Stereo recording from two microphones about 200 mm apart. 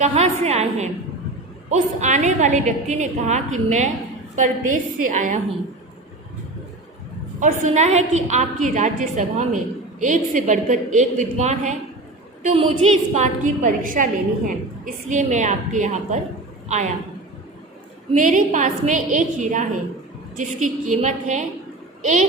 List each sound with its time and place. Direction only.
0.0 s a woman's voice: 35° right (ahead or behind)
7.3 s a woman's voice: 35° right (ahead or behind)
12.8 s a woman's voice: 35° right (ahead or behind)
18.1 s a woman's voice: 40° right (ahead or behind)